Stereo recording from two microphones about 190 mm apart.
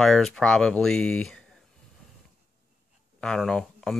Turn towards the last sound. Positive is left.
turn(degrees=5)  # may be behind; listen again after turning